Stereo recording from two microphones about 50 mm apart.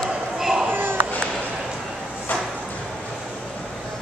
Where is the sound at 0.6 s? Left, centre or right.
Right.